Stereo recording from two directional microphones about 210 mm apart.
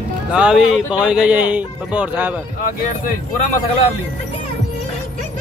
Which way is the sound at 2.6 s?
40° left (ahead or behind).